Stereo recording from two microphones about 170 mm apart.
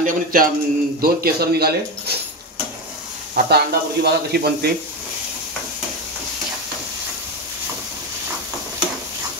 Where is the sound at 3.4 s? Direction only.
70° right (ahead or behind).